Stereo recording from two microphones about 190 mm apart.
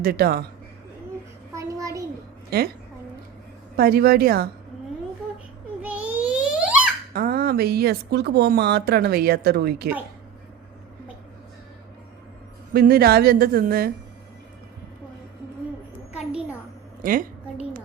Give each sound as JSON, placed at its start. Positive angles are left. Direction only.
{"t": 0.0, "sound": "a woman's voice", "side_deg": -55}
{"t": 1.5, "sound": "a sound", "side_deg": -15}
{"t": 2.5, "sound": "a woman's voice", "side_deg": -55}
{"t": 3.8, "sound": "a woman's voice", "side_deg": -55}
{"t": 5.8, "sound": "babbling", "side_deg": -5}
{"t": 7.1, "sound": "a woman's voice", "side_deg": -50}
{"t": 12.7, "sound": "a woman's voice", "side_deg": -55}
{"t": 16.1, "sound": "a sound", "side_deg": -5}
{"t": 17.0, "sound": "a woman's voice", "side_deg": -45}